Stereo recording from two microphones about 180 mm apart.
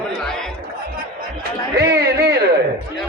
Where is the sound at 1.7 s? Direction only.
65° right (ahead or behind).